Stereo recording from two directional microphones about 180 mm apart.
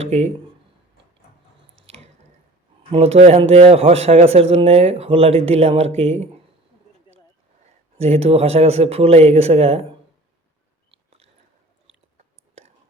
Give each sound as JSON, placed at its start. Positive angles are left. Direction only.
{"t": 0.0, "sound": "speech", "side_deg": -35}
{"t": 2.9, "sound": "speech", "side_deg": -35}
{"t": 7.9, "sound": "speech", "side_deg": -35}